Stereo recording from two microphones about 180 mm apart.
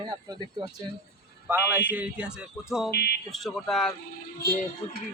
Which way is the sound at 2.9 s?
60° left (ahead or behind).